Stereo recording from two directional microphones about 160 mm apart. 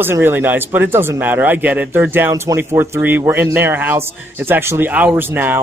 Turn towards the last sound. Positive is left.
turn(degrees=-15)  # may be behind; listen again after turning